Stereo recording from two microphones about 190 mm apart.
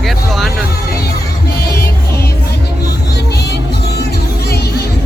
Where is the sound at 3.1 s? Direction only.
60° left (ahead or behind).